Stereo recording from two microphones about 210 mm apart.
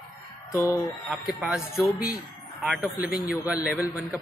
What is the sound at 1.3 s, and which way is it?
Speech, centre (ahead or behind).